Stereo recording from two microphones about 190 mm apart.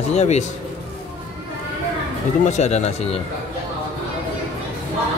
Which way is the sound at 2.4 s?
35° left (ahead or behind).